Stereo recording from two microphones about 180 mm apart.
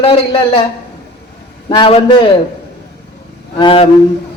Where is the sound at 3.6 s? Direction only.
30° left (ahead or behind).